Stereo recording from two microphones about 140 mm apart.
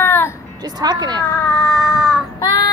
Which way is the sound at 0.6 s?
30° right (ahead or behind).